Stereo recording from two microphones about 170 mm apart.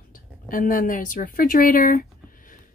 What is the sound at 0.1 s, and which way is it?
A woman's voice, 55° left (ahead or behind).